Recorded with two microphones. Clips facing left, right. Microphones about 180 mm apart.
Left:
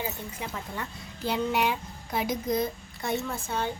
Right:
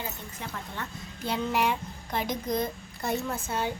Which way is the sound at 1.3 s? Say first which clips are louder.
Left 1 dB; centre (ahead or behind).